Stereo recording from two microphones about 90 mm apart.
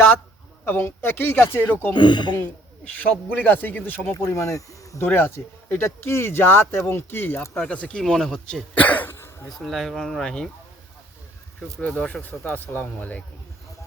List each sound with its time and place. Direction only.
0.6 s speech: 25° left (ahead or behind)
1.9 s speech: 55° left (ahead or behind)
2.3 s a man's voice: 15° left (ahead or behind)
4.1 s speech: 30° left (ahead or behind)
7.7 s a man's voice: 10° left (ahead or behind)
9.1 s a sound: 30° left (ahead or behind)
9.5 s speech: centre (ahead or behind)
11.8 s a man's voice: 15° left (ahead or behind)